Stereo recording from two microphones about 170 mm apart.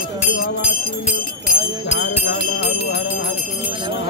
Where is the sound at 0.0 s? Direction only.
60° left (ahead or behind).